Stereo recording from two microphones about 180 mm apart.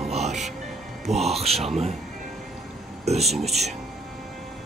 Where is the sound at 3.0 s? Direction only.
35° right (ahead or behind).